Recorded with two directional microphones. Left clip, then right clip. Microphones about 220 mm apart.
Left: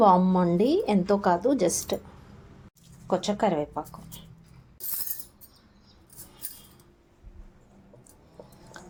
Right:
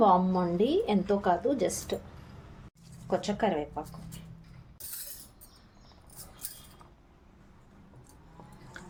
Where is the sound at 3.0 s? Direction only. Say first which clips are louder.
Left 4 dB; 30° left (ahead or behind).